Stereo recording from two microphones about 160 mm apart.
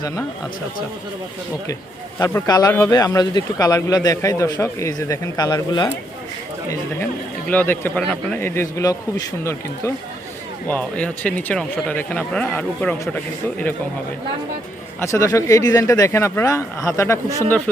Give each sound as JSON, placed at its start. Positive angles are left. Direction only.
{"t": 2.1, "sound": "a man's voice", "side_deg": 15}
{"t": 6.7, "sound": "speech", "side_deg": 10}
{"t": 15.0, "sound": "a man's voice", "side_deg": 20}